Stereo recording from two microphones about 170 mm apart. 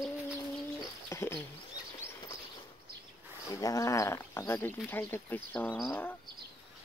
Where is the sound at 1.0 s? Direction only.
15° left (ahead or behind).